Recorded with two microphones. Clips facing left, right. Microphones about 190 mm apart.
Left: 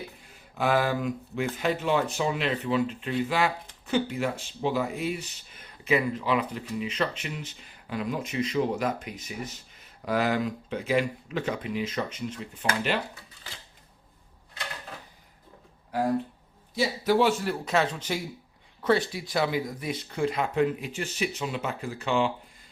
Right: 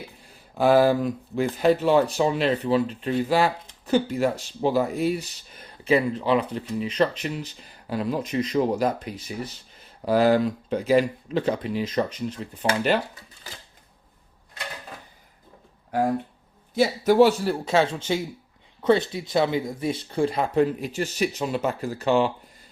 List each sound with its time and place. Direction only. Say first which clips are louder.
0.5 s speech: right 7 dB; 35° right (ahead or behind)
16.7 s speech: right 6 dB; 50° right (ahead or behind)